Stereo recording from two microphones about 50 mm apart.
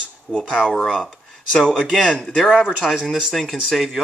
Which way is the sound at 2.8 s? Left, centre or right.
Centre.